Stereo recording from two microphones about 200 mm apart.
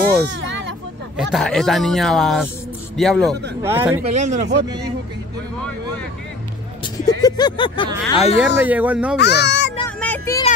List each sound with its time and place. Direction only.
0.3 s speech: 70° right (ahead or behind)
1.1 s speech: centre (ahead or behind)
3.6 s speech: 10° right (ahead or behind)
4.1 s speech: 35° right (ahead or behind)
7.2 s speech: 20° left (ahead or behind)
8.5 s speech: 10° right (ahead or behind)
9.2 s a child's voice: 55° left (ahead or behind)
9.8 s child singing: 10° left (ahead or behind)